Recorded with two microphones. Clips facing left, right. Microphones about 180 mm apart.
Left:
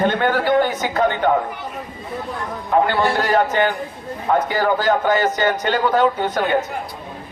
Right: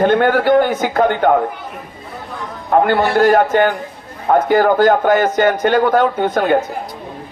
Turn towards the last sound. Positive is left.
turn(degrees=-50)  # may be behind; listen again after turning